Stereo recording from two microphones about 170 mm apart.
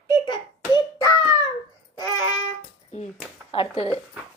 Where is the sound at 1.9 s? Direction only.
25° left (ahead or behind).